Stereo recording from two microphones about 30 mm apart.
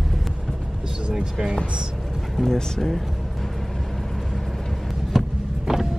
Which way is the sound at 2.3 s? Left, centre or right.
Centre.